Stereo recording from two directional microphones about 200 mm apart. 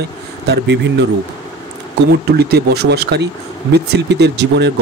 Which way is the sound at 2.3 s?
55° right (ahead or behind).